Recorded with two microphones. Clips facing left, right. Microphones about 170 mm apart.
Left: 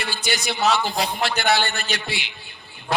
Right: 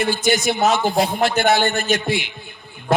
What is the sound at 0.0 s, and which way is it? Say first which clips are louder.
A man's voice: right 9 dB; 50° right (ahead or behind).